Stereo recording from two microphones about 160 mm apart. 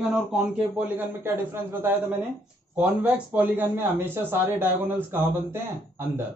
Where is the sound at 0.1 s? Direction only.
5° right (ahead or behind).